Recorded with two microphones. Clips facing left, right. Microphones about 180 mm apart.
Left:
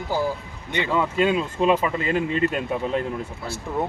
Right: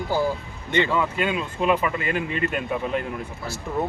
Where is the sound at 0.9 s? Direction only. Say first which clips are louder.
Left 3 dB; 25° left (ahead or behind).